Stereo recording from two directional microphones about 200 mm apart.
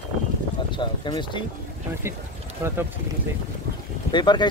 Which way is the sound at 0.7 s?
25° left (ahead or behind).